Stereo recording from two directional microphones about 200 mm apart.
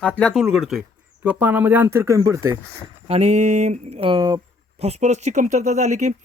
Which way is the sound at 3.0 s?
30° right (ahead or behind).